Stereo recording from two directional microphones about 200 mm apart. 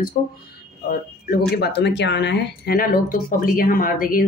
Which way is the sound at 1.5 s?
55° left (ahead or behind).